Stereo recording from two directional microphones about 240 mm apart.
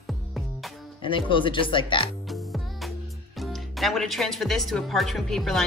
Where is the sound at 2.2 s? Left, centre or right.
Centre.